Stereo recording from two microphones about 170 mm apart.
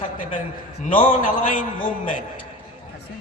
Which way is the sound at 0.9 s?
50° left (ahead or behind).